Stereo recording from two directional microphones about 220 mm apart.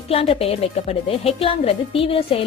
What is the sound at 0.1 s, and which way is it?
Speech, 25° left (ahead or behind).